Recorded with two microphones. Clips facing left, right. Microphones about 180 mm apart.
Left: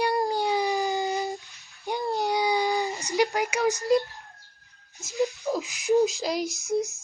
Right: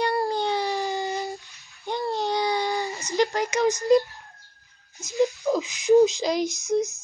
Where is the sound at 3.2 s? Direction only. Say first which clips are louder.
Right 2 dB; 10° left (ahead or behind).